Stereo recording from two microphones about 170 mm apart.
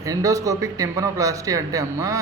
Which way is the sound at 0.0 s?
20° right (ahead or behind).